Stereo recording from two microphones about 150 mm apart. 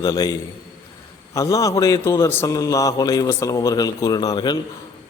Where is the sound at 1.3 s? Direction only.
20° left (ahead or behind).